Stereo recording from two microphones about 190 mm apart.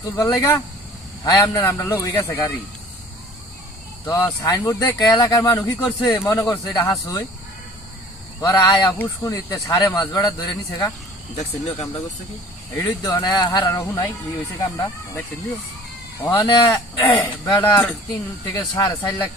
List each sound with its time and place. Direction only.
0.2 s speech: 15° left (ahead or behind)
4.0 s speech: 15° left (ahead or behind)
8.4 s speech: 15° left (ahead or behind)
12.7 s speech: 15° left (ahead or behind)
16.2 s speech: 15° left (ahead or behind)
17.6 s speech: 10° left (ahead or behind)